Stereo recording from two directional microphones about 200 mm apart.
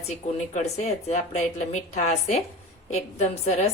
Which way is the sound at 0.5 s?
35° left (ahead or behind).